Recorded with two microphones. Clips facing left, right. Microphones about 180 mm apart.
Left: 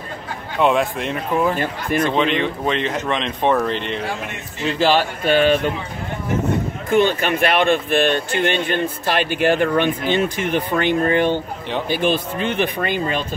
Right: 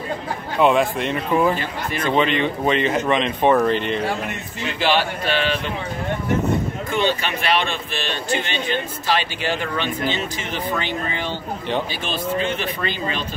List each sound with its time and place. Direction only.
0.6 s speech: centre (ahead or behind)
1.6 s speech: 50° left (ahead or behind)
2.0 s speech: centre (ahead or behind)
4.7 s speech: 40° left (ahead or behind)
6.9 s speech: 50° left (ahead or behind)